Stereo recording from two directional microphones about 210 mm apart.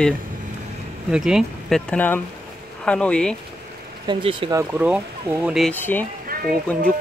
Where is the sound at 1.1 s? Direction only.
5° right (ahead or behind).